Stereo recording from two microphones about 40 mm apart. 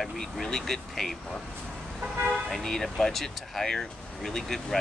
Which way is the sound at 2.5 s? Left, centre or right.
Centre.